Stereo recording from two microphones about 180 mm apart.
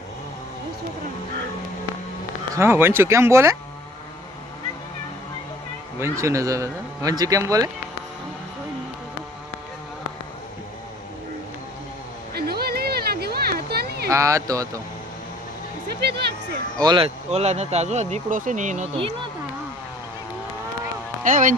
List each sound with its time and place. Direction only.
2.6 s speech: 15° right (ahead or behind)
6.0 s speech: 15° right (ahead or behind)
12.3 s a sound: 60° right (ahead or behind)
14.1 s speech: 15° right (ahead or behind)
16.0 s speech: 65° right (ahead or behind)
16.7 s speech: 25° right (ahead or behind)
17.3 s speech: 35° right (ahead or behind)
21.2 s speech: 45° right (ahead or behind)